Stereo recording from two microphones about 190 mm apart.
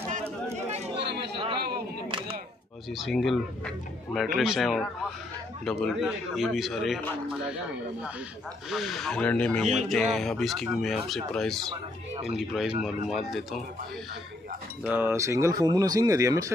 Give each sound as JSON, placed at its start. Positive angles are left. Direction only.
{"t": 0.1, "sound": "chatter", "side_deg": -35}
{"t": 2.9, "sound": "speech", "side_deg": 0}
{"t": 8.6, "sound": "speech", "side_deg": 0}
{"t": 14.8, "sound": "speech", "side_deg": -10}